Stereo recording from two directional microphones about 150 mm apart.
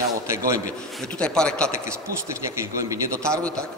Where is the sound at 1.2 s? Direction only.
5° left (ahead or behind).